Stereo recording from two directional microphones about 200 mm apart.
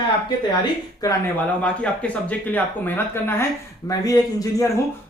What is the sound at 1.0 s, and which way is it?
Speech, 15° left (ahead or behind).